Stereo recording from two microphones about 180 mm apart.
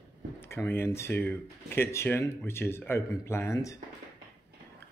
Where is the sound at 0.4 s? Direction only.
10° left (ahead or behind).